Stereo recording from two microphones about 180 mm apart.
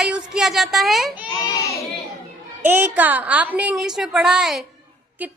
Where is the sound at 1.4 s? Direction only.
15° left (ahead or behind).